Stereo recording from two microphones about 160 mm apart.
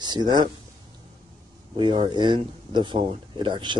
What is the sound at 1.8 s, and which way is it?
A man's voice, 30° right (ahead or behind).